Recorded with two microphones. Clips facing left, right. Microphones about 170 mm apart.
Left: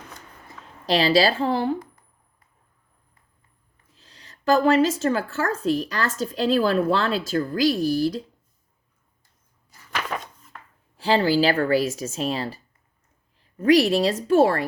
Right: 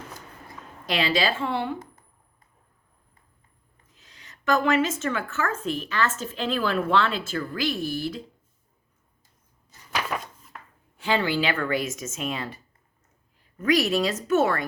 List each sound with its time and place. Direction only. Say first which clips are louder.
0.9 s a woman's voice: left 6 dB; 35° left (ahead or behind)
3.9 s a woman's voice: left 2 dB; 35° left (ahead or behind)
10.1 s a sound: left 2 dB; 5° right (ahead or behind)
10.9 s a woman's voice: left 5 dB; 35° left (ahead or behind)